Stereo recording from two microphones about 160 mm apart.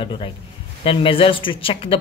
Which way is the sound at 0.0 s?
30° left (ahead or behind).